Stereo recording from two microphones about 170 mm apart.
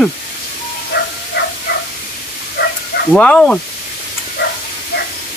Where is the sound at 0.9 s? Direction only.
75° left (ahead or behind).